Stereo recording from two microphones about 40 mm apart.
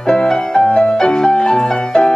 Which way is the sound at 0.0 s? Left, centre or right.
Centre.